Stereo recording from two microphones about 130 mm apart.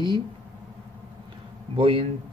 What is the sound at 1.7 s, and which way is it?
Speech, 45° right (ahead or behind).